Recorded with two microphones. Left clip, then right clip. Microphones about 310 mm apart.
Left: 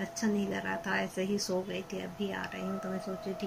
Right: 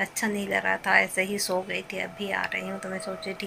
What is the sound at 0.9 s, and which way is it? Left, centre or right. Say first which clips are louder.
Speech: right 14 dB; right.